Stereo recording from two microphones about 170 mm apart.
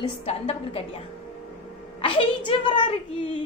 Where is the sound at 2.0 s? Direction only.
30° left (ahead or behind).